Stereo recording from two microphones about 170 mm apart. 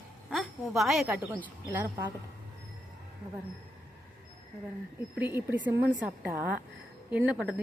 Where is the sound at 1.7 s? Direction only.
15° right (ahead or behind).